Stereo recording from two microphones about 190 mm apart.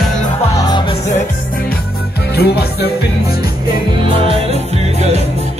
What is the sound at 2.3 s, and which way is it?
Music, 55° left (ahead or behind).